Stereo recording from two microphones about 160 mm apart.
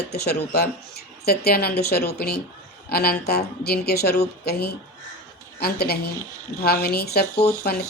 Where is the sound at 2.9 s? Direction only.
75° left (ahead or behind).